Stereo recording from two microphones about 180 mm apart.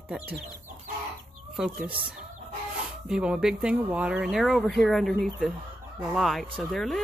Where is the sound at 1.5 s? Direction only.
5° right (ahead or behind).